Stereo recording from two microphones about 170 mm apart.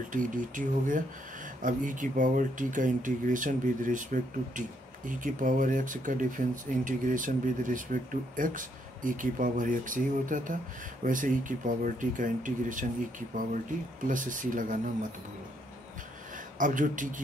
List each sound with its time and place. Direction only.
0.1 s speech: 50° right (ahead or behind)
14.0 s speech: 50° right (ahead or behind)
16.5 s speech: 50° right (ahead or behind)